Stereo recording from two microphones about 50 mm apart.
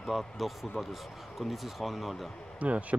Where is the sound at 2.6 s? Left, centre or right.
Right.